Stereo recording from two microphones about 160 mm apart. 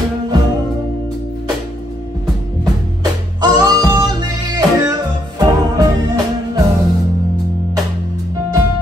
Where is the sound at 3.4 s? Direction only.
25° right (ahead or behind).